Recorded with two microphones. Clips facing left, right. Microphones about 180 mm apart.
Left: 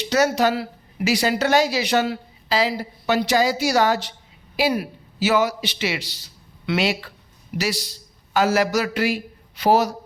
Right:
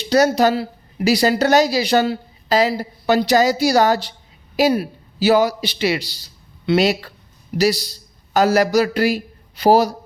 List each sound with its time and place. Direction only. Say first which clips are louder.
0.0 s a woman's voice: right 4 dB; 35° right (ahead or behind)